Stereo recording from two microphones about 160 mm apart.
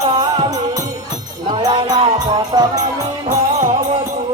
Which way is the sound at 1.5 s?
25° right (ahead or behind).